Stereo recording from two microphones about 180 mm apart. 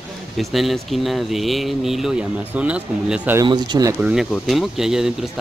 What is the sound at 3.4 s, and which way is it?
Speech, 25° right (ahead or behind).